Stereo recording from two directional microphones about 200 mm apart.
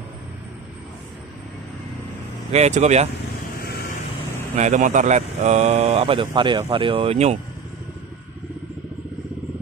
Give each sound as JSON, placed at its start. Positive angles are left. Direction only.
{"t": 2.5, "sound": "speech", "side_deg": -35}
{"t": 4.6, "sound": "speech", "side_deg": -35}